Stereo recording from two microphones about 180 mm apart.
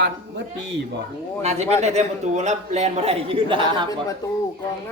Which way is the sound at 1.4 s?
35° right (ahead or behind).